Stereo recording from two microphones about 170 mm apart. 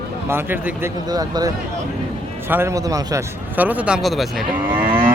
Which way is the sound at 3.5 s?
10° right (ahead or behind).